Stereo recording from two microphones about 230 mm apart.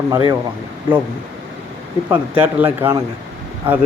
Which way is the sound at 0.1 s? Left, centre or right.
Centre.